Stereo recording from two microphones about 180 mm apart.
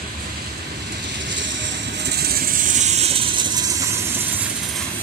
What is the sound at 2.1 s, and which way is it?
Vehicle, 60° right (ahead or behind).